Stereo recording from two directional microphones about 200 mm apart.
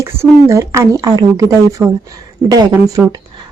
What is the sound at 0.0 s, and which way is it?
Speech, 15° right (ahead or behind).